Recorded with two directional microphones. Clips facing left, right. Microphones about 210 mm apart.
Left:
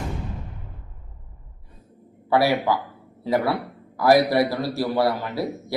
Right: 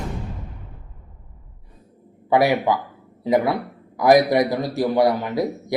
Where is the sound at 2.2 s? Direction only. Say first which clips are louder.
Right 2 dB; 15° right (ahead or behind).